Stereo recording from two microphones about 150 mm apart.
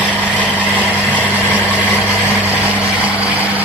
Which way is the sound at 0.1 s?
10° left (ahead or behind).